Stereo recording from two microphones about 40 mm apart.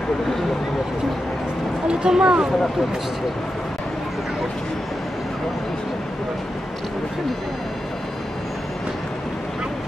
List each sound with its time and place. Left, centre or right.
1.9 s speech: right